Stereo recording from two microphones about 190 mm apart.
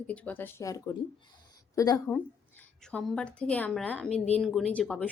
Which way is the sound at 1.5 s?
20° left (ahead or behind).